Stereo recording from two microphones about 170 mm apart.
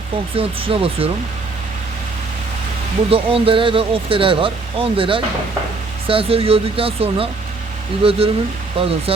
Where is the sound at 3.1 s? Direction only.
30° right (ahead or behind).